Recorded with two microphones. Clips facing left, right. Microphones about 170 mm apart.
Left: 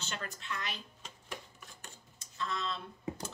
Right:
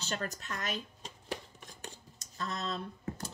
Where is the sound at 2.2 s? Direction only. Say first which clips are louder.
Even; 40° right (ahead or behind).